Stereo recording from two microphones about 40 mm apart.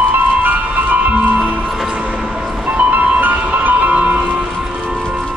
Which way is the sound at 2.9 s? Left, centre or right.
Right.